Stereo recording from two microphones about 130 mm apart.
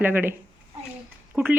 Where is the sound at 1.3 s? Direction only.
15° right (ahead or behind).